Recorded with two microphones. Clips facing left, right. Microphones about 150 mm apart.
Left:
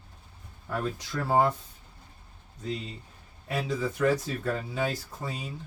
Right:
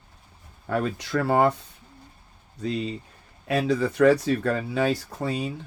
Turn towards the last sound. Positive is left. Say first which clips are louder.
# right 9 dB
turn(degrees=-70)  # may be behind; listen again after turning